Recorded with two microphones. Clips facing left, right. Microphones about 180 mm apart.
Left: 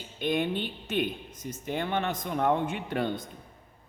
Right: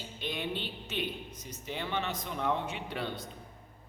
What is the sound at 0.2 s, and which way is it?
A man's voice, 50° left (ahead or behind).